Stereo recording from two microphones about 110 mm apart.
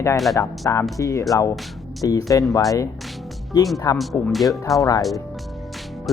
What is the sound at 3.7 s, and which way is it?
Speech, 30° left (ahead or behind).